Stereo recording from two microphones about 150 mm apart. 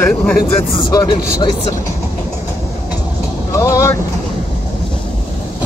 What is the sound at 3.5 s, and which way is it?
Speech, 20° left (ahead or behind).